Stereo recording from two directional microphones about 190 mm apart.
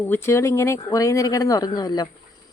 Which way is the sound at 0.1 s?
15° left (ahead or behind).